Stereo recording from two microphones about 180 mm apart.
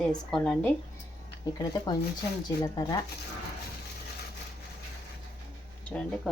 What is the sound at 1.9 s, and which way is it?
Speech, 25° left (ahead or behind).